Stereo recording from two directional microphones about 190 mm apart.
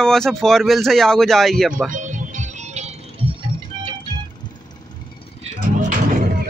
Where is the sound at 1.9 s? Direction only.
40° right (ahead or behind).